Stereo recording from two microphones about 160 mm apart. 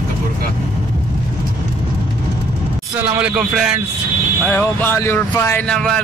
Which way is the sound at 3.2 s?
5° right (ahead or behind).